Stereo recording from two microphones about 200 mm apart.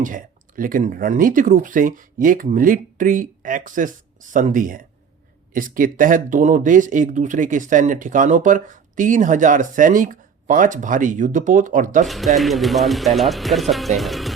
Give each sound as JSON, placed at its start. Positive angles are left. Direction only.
{"t": 0.0, "sound": "speech", "side_deg": -40}
{"t": 12.0, "sound": "speech", "side_deg": 0}